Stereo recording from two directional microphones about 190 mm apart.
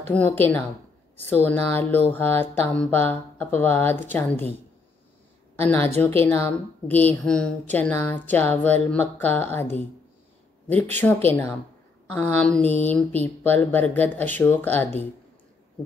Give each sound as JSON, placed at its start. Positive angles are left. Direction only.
{"t": 0.1, "sound": "speech", "side_deg": 10}
{"t": 5.6, "sound": "a woman's voice", "side_deg": 10}
{"t": 11.2, "sound": "a woman's voice", "side_deg": 10}